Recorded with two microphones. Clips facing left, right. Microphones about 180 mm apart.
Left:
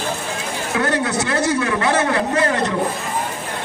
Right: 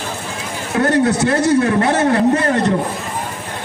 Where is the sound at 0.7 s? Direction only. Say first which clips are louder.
Right 6 dB; 45° right (ahead or behind).